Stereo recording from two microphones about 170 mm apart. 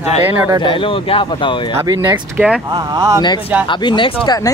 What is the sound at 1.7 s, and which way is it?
Speech, 20° right (ahead or behind).